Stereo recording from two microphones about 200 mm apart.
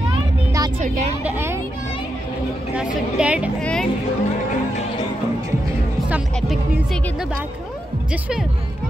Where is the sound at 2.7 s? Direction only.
5° right (ahead or behind).